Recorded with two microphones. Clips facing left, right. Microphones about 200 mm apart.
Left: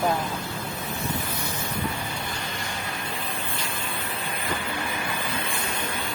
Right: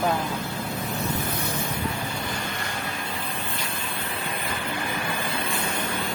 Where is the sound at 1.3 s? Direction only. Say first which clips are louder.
Right 3 dB; 55° right (ahead or behind).